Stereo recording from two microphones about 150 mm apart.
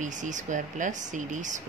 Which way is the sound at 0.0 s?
55° right (ahead or behind).